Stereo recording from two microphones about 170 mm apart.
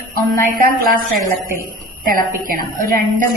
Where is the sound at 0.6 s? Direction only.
60° right (ahead or behind).